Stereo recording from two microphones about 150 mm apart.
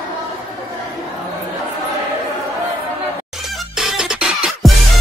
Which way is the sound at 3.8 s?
5° right (ahead or behind).